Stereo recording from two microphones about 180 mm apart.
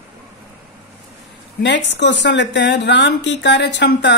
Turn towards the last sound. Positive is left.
turn(degrees=75)  # may be behind; listen again after turning